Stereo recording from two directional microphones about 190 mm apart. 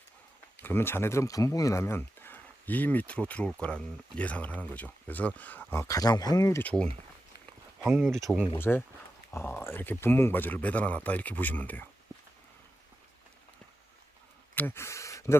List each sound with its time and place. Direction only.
0.6 s speech: 10° left (ahead or behind)
7.9 s speech: centre (ahead or behind)
8.5 s speech: 10° left (ahead or behind)
14.5 s speech: 10° left (ahead or behind)